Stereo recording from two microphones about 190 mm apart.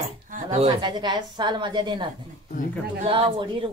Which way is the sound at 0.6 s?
25° right (ahead or behind).